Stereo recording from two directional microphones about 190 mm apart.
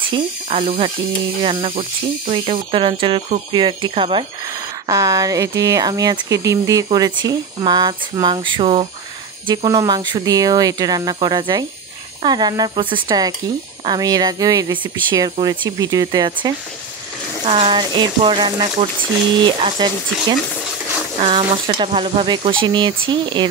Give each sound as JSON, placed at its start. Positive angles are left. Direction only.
{"t": 0.1, "sound": "speech", "side_deg": -30}